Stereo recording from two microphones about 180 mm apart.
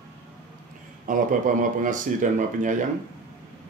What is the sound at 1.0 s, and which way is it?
Speech, 45° right (ahead or behind).